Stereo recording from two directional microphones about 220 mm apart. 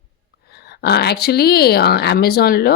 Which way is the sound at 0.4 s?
45° left (ahead or behind).